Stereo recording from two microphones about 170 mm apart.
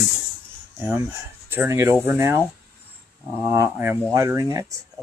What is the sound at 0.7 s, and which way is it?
Speech, 10° right (ahead or behind).